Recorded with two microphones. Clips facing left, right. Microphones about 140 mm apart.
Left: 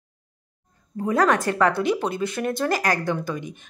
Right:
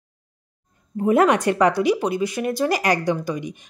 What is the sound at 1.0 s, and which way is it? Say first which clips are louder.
A woman's voice: right 4 dB; 20° right (ahead or behind).